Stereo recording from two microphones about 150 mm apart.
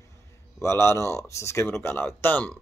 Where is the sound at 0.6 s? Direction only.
15° left (ahead or behind).